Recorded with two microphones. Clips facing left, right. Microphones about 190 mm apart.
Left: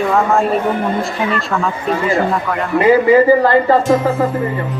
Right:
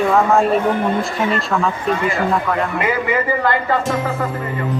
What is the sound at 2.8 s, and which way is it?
Speech, 35° left (ahead or behind).